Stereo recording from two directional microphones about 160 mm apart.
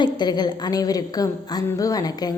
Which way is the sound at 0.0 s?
25° left (ahead or behind).